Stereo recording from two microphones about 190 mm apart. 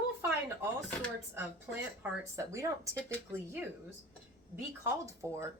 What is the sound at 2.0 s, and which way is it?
Speech, 15° right (ahead or behind).